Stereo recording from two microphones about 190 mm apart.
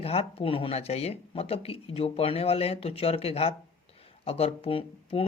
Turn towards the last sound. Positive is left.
turn(degrees=30)  # may be behind; listen again after turning